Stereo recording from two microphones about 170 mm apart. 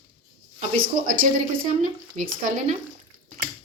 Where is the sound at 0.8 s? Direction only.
55° right (ahead or behind).